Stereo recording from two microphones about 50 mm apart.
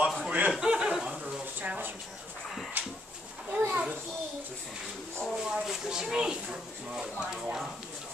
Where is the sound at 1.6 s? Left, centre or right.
Right.